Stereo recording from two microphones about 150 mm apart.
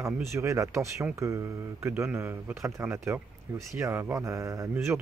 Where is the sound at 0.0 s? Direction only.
20° right (ahead or behind).